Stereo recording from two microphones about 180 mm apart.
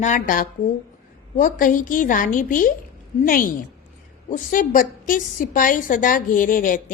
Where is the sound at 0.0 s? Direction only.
45° left (ahead or behind).